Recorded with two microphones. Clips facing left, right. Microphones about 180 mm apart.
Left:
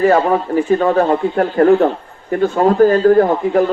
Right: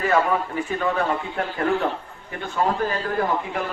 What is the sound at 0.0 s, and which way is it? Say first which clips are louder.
A man's voice: left 8 dB; 35° left (ahead or behind).